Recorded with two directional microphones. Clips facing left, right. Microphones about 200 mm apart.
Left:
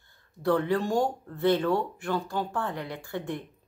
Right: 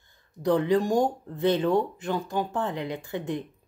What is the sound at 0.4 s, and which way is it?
Speech, 15° right (ahead or behind).